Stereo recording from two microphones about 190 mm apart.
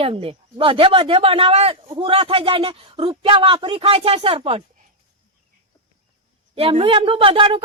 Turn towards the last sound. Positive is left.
turn(degrees=-30)  # may be behind; listen again after turning